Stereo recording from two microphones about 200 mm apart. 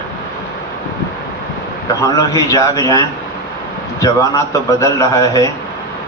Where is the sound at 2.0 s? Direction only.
15° left (ahead or behind).